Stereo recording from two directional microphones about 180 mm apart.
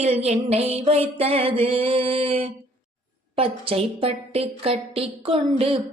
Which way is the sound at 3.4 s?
30° right (ahead or behind).